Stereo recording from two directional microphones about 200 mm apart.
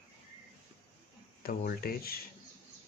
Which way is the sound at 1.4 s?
50° left (ahead or behind).